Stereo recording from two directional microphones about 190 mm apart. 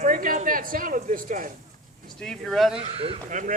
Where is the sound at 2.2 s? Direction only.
5° left (ahead or behind).